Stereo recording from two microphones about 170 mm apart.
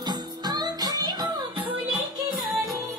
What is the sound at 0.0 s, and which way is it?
Music, 25° right (ahead or behind).